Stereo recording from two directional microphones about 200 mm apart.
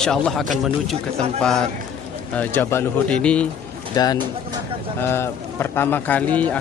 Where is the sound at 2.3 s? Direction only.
10° left (ahead or behind).